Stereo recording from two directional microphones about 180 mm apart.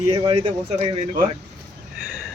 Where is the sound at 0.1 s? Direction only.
30° right (ahead or behind).